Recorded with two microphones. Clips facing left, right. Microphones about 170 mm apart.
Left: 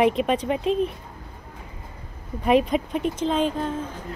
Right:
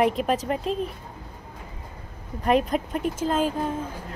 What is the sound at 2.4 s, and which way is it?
Speech, centre (ahead or behind).